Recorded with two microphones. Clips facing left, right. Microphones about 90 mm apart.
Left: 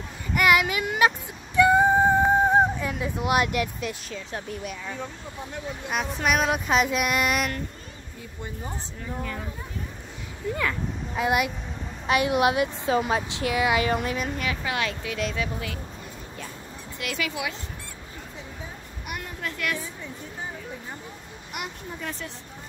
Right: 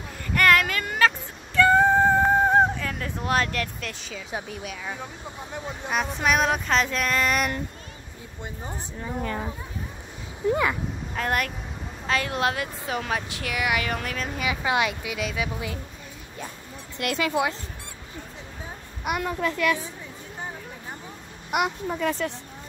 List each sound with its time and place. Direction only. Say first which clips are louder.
0.3 s music: even; 10° left (ahead or behind)
4.1 s speech: even; 5° right (ahead or behind)
5.9 s speech: right 1 dB; centre (ahead or behind)
9.2 s speech: right 5 dB; 40° right (ahead or behind)
10.5 s speech: right 4 dB; 20° right (ahead or behind)
11.1 s speech: left 3 dB; 10° left (ahead or behind)
12.1 s speech: left 4 dB; 20° left (ahead or behind)
13.9 s speech: left 3 dB; 15° left (ahead or behind)
14.3 s speech: right 4 dB; 10° right (ahead or behind)
17.2 s speech: right 6 dB; 35° right (ahead or behind)
19.1 s a child's voice: right 8 dB; 90° right
21.5 s speech: right 10 dB; 70° right (ahead or behind)